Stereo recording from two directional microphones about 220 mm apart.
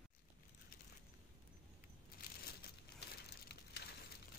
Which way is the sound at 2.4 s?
45° left (ahead or behind).